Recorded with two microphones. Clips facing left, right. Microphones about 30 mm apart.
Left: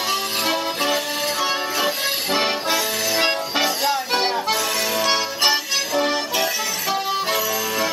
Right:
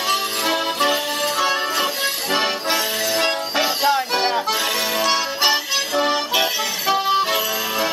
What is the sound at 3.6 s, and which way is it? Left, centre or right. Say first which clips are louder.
Music: right 4 dB; centre.